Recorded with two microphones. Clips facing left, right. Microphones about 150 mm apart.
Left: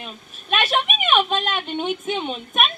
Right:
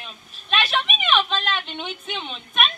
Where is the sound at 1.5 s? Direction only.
15° left (ahead or behind).